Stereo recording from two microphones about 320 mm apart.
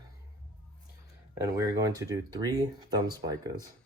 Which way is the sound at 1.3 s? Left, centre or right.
Centre.